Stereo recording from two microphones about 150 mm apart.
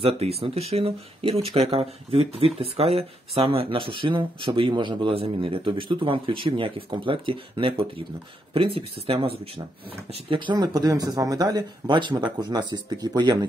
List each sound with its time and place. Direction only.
0.0 s speech: 40° right (ahead or behind)